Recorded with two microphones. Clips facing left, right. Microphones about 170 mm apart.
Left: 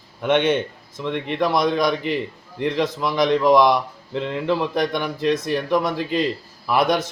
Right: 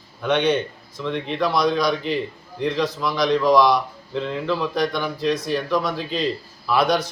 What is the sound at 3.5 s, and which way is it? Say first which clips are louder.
Speech: left 1 dB; 55° left (ahead or behind).